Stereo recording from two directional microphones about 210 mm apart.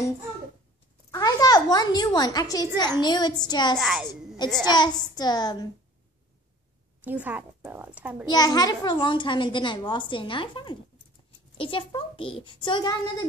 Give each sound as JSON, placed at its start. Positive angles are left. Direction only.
{"t": 1.1, "sound": "a child's voice", "side_deg": 20}
{"t": 3.7, "sound": "a child's voice", "side_deg": 0}
{"t": 4.6, "sound": "a child's voice", "side_deg": 20}
{"t": 7.1, "sound": "a woman's voice", "side_deg": -10}
{"t": 8.3, "sound": "a child's voice", "side_deg": 20}